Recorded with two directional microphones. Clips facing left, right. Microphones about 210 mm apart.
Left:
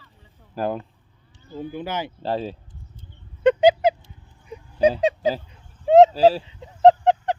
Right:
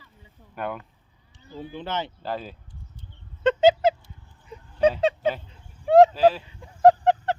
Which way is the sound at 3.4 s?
15° left (ahead or behind).